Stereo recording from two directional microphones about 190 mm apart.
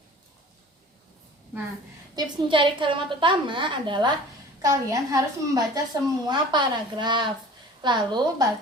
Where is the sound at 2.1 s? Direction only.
25° right (ahead or behind).